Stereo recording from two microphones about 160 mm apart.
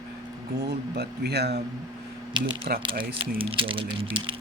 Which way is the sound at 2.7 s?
65° right (ahead or behind).